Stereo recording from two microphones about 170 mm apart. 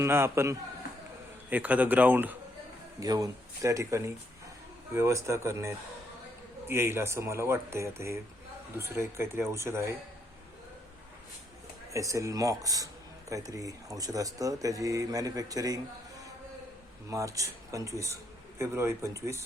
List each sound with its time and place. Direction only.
0.0 s speech: 15° right (ahead or behind)
3.0 s speech: 20° right (ahead or behind)
11.9 s speech: 20° right (ahead or behind)
17.1 s speech: 20° right (ahead or behind)